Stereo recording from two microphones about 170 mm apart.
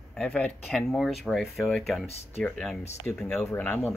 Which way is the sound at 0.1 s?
5° left (ahead or behind).